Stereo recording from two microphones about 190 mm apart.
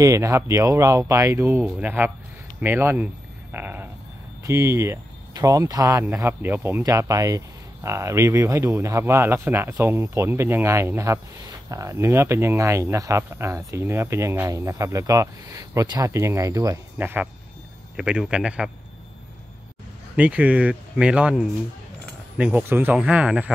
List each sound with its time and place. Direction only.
0.0 s speech: 15° right (ahead or behind)
3.5 s a sound: 10° right (ahead or behind)
4.4 s speech: 15° right (ahead or behind)
20.2 s speech: 5° right (ahead or behind)